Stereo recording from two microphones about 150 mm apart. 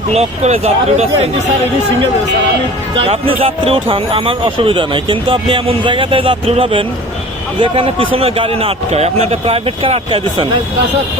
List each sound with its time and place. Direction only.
0.1 s speech: 45° right (ahead or behind)
3.0 s speech: 40° right (ahead or behind)